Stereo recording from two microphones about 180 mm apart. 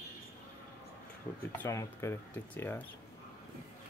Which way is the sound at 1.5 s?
15° left (ahead or behind).